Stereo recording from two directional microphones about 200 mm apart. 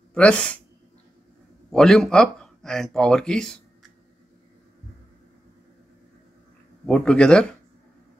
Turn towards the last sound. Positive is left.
turn(degrees=5)  # may be behind; listen again after turning